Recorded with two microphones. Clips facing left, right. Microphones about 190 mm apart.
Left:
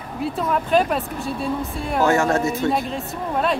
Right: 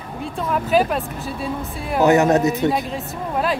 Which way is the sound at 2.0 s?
20° right (ahead or behind).